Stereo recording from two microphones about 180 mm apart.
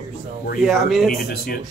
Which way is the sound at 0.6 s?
Centre (ahead or behind).